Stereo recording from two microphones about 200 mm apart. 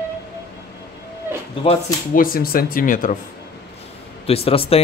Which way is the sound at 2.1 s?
45° left (ahead or behind).